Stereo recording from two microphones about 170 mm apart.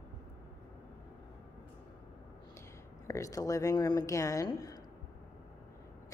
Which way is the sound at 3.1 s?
20° left (ahead or behind).